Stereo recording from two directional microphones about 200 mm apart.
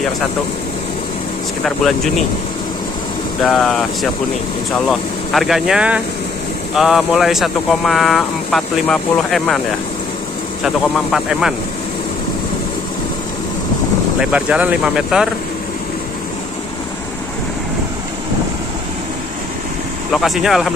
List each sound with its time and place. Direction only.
3.4 s speech: centre (ahead or behind)
10.6 s speech: centre (ahead or behind)
14.2 s speech: 5° right (ahead or behind)
20.1 s speech: centre (ahead or behind)